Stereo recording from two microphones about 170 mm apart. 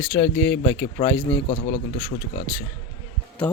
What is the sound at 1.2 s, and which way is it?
Speech, 35° left (ahead or behind).